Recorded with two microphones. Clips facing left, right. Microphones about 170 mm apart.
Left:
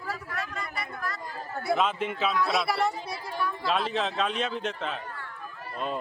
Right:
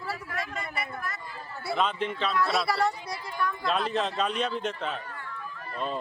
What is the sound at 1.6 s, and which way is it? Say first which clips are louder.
Speech: left 1 dB; centre (ahead or behind).